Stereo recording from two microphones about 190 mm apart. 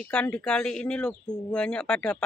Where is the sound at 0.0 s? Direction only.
5° left (ahead or behind).